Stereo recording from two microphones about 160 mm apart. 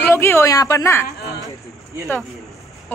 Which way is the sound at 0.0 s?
15° left (ahead or behind).